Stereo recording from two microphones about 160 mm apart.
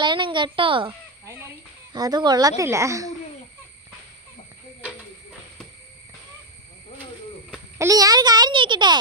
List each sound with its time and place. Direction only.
0.0 s a child's voice: 30° right (ahead or behind)
1.2 s a sound: 15° right (ahead or behind)
1.9 s speech: 25° right (ahead or behind)
7.8 s speech: 20° right (ahead or behind)